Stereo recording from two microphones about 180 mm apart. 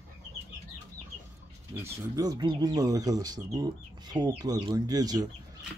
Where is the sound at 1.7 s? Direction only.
15° right (ahead or behind).